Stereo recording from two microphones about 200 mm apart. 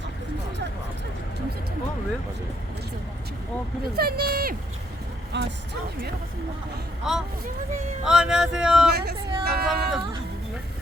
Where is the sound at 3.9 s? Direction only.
50° right (ahead or behind).